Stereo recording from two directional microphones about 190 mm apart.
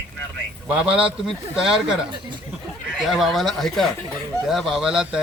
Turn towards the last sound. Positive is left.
turn(degrees=-5)  # may be behind; listen again after turning